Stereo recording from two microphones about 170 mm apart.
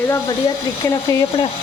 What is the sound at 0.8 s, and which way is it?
Speech, 20° left (ahead or behind).